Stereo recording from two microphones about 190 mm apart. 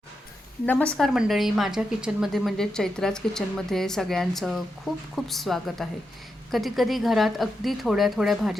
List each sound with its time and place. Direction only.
0.6 s a woman's voice: 10° left (ahead or behind)